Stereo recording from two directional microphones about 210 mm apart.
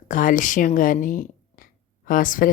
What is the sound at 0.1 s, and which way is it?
A woman's voice, 40° left (ahead or behind).